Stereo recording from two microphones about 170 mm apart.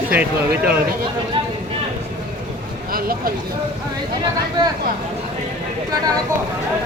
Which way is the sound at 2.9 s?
60° right (ahead or behind).